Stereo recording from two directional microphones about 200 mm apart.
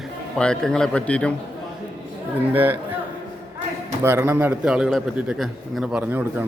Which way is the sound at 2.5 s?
10° right (ahead or behind).